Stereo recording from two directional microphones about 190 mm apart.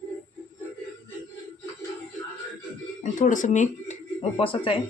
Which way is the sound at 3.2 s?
40° left (ahead or behind).